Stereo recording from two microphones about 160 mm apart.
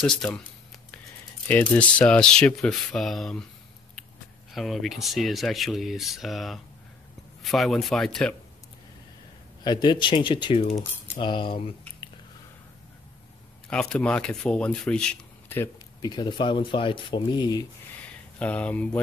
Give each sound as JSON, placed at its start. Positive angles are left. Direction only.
{"t": 0.0, "sound": "speech", "side_deg": 5}
{"t": 1.5, "sound": "speech", "side_deg": 10}
{"t": 4.6, "sound": "speech", "side_deg": 0}
{"t": 9.6, "sound": "speech", "side_deg": 25}
{"t": 11.1, "sound": "cutlery", "side_deg": 30}
{"t": 13.7, "sound": "speech", "side_deg": 5}
{"t": 16.0, "sound": "speech", "side_deg": 30}
{"t": 18.4, "sound": "speech", "side_deg": 10}